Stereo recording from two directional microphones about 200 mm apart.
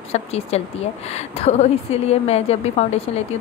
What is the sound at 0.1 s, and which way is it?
A woman's voice, 30° left (ahead or behind).